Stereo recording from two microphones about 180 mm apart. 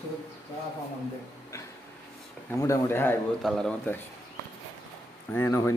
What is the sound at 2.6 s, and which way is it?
A man's voice, 15° left (ahead or behind).